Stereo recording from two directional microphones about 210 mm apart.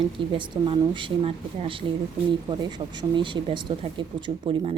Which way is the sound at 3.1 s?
25° right (ahead or behind).